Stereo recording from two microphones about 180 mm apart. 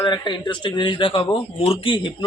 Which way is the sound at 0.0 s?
25° left (ahead or behind).